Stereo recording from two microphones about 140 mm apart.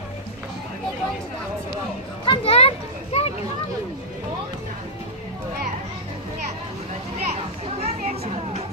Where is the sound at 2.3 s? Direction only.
45° left (ahead or behind).